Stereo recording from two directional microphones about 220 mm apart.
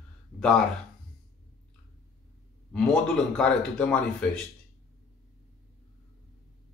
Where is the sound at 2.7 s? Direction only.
5° left (ahead or behind).